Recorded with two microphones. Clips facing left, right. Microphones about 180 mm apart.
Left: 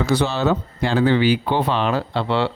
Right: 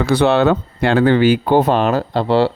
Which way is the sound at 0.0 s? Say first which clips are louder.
Right 6 dB; 60° right (ahead or behind).